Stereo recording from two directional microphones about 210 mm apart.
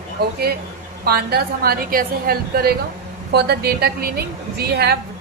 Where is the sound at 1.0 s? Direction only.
50° right (ahead or behind).